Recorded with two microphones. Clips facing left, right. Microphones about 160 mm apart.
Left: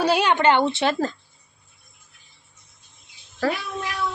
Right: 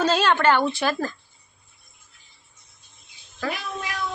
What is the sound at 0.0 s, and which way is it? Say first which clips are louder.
Speech: left 1 dB; 15° left (ahead or behind).